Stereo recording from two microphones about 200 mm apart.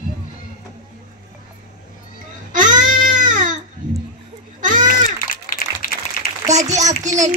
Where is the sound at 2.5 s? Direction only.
40° right (ahead or behind).